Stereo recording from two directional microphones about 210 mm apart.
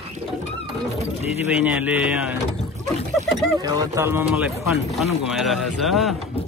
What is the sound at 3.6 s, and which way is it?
Speech, 15° right (ahead or behind).